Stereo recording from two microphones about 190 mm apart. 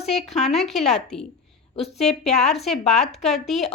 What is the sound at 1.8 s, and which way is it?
Speech, 35° left (ahead or behind).